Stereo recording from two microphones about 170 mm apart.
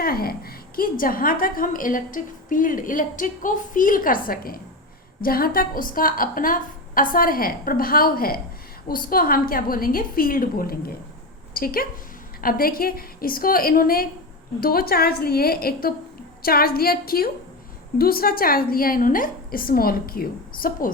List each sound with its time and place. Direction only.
0.0 s a woman's voice: 60° left (ahead or behind)